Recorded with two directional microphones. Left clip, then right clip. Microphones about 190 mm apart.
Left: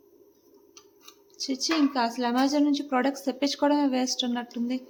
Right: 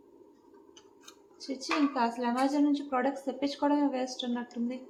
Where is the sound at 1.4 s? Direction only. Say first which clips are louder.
Left 5 dB; 50° left (ahead or behind).